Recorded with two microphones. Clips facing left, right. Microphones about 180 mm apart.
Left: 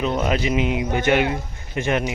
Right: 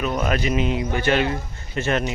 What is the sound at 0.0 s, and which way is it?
A man's voice, 20° left (ahead or behind).